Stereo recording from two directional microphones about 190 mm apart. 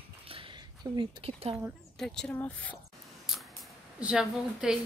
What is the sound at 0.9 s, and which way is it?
Speech, 30° right (ahead or behind).